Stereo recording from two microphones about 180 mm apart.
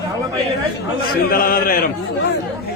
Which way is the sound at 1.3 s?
55° left (ahead or behind).